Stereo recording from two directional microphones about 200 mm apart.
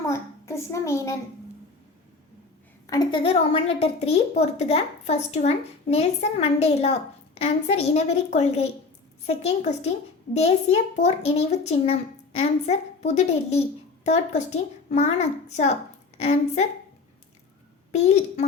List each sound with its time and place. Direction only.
0.1 s a sound: 15° left (ahead or behind)
2.8 s a woman's voice: 15° left (ahead or behind)
3.2 s a woman's voice: 30° left (ahead or behind)